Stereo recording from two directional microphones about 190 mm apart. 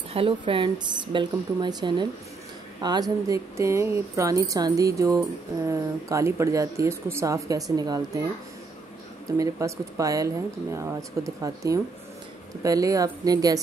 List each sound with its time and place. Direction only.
0.1 s speech: 30° right (ahead or behind)
9.4 s speech: 15° right (ahead or behind)